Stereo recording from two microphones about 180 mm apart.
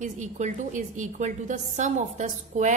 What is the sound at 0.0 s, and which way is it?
A woman's voice, 45° right (ahead or behind).